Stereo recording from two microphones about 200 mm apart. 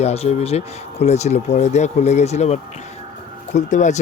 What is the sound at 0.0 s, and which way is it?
Speech, 30° left (ahead or behind).